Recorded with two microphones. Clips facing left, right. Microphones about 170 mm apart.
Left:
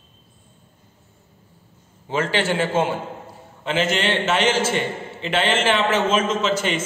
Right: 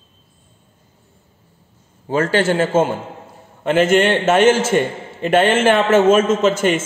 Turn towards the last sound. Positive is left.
turn(degrees=-50)  # may be behind; listen again after turning